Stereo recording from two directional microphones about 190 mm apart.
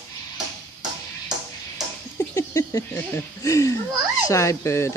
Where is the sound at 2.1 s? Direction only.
15° left (ahead or behind).